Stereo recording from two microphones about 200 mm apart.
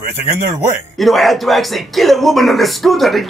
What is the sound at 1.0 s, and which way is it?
Speech, centre (ahead or behind).